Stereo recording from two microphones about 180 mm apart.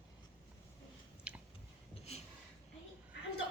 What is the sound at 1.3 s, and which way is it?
Chewing, 5° right (ahead or behind).